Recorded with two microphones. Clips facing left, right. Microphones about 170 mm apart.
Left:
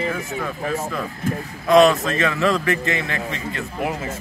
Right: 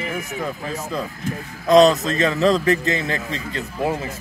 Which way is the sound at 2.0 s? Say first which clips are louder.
Right 2 dB; 35° right (ahead or behind).